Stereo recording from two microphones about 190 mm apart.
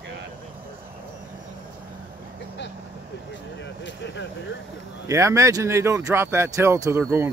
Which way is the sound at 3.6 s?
70° left (ahead or behind).